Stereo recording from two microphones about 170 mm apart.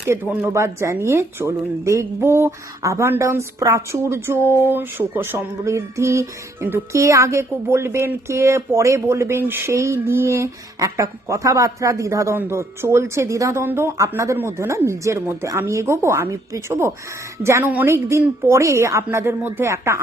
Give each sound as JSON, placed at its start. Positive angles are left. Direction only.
{"t": 0.1, "sound": "speech", "side_deg": -15}